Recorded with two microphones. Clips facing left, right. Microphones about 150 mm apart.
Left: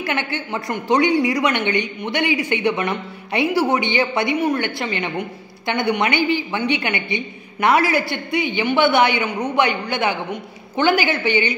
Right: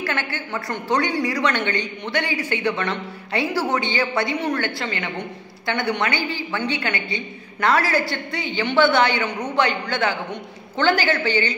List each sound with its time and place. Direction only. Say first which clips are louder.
0.0 s a woman's voice: left 3 dB; 20° left (ahead or behind)